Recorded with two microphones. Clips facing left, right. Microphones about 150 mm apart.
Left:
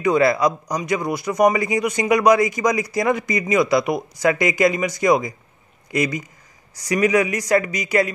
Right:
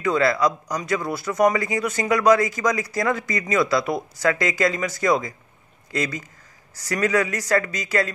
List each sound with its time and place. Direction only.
0.0 s a man's voice: 20° left (ahead or behind)